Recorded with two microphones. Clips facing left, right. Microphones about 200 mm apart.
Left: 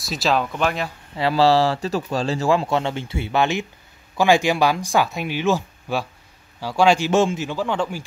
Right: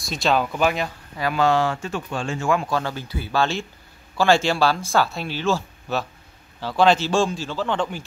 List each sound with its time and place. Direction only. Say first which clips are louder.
0.0 s speech: even; centre (ahead or behind)
1.1 s speech: left 4 dB; 30° left (ahead or behind); by 8.0 s 5° left (ahead or behind)